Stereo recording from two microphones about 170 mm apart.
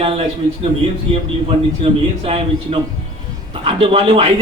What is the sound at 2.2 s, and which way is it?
A man's voice, 35° right (ahead or behind).